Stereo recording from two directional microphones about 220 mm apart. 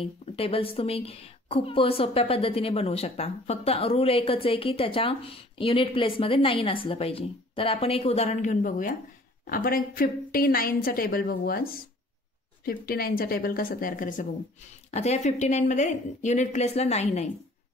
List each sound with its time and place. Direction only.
0.0 s a woman's voice: 25° left (ahead or behind)